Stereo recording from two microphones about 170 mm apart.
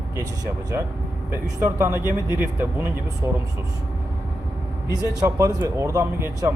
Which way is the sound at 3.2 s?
15° right (ahead or behind).